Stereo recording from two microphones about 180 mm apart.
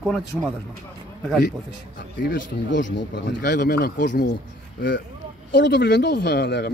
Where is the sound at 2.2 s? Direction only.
80° left.